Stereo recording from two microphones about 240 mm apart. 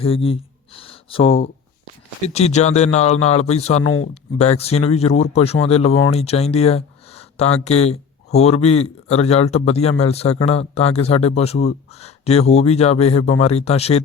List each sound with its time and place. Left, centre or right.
0.0 s speech: left